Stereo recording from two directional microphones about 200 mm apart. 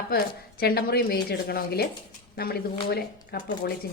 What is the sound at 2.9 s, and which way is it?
Speech, 55° left (ahead or behind).